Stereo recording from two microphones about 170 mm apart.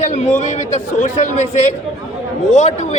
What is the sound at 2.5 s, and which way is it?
Speech, 45° left (ahead or behind).